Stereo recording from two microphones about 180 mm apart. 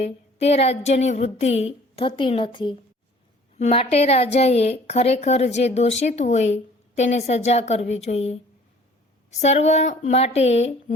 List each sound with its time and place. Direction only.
0.0 s a woman's voice: 35° left (ahead or behind)
9.4 s a woman's voice: 40° left (ahead or behind)